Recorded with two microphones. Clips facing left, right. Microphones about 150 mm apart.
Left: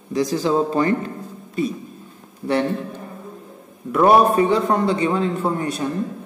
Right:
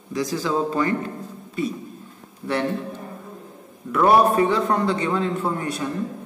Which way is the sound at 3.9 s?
15° left (ahead or behind).